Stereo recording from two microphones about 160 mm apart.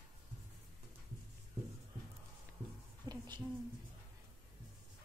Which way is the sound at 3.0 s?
25° right (ahead or behind).